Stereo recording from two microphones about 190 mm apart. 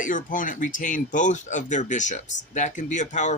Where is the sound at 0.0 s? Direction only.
45° left (ahead or behind).